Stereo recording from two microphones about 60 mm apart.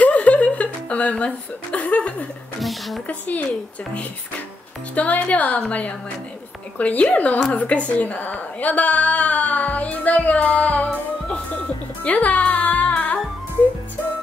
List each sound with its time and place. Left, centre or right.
0.0 s a sound: left
2.6 s speech: centre
3.1 s a woman's voice: left
4.9 s a woman's voice: left
12.0 s music: left